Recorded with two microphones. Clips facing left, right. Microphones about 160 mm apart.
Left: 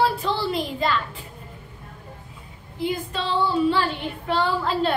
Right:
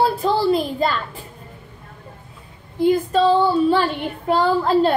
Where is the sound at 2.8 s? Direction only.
40° right (ahead or behind).